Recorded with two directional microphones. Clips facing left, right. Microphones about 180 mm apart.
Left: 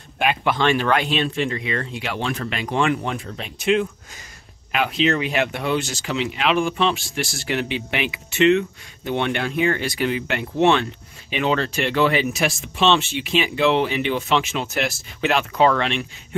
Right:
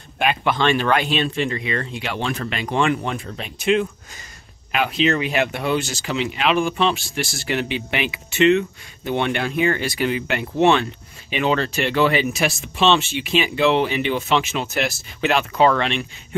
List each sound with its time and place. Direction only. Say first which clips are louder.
0.2 s speech: even; 10° left (ahead or behind)